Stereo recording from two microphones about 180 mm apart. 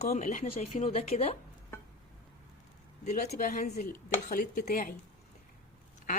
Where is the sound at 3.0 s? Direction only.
40° left (ahead or behind).